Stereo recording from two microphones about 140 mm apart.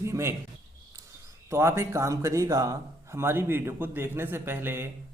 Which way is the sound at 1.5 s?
20° right (ahead or behind).